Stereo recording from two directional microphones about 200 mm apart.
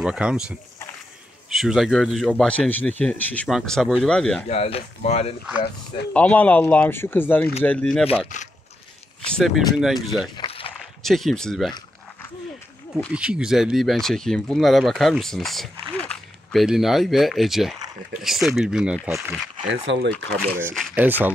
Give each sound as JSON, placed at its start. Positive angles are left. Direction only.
{"t": 0.0, "sound": "speech", "side_deg": -5}
{"t": 4.5, "sound": "speech", "side_deg": 30}
{"t": 6.1, "sound": "speech", "side_deg": 5}
{"t": 9.2, "sound": "speech", "side_deg": 0}
{"t": 10.3, "sound": "a sound", "side_deg": 25}
{"t": 11.0, "sound": "speech", "side_deg": 0}
{"t": 12.9, "sound": "speech", "side_deg": -5}
{"t": 19.7, "sound": "speech", "side_deg": -65}
{"t": 20.7, "sound": "speech", "side_deg": 0}
{"t": 21.0, "sound": "speech", "side_deg": -10}